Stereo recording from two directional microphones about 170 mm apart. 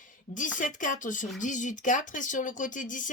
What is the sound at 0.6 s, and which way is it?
Speech, 50° left (ahead or behind).